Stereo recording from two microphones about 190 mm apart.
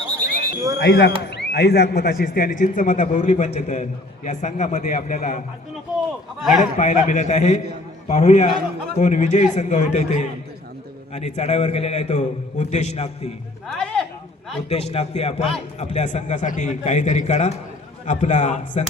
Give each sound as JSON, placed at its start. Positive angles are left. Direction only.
{"t": 0.8, "sound": "a man's voice", "side_deg": 65}
{"t": 6.4, "sound": "a man's voice", "side_deg": 0}
{"t": 6.7, "sound": "a man's voice", "side_deg": 40}
{"t": 13.7, "sound": "a sound", "side_deg": 5}
{"t": 14.7, "sound": "a man's voice", "side_deg": 35}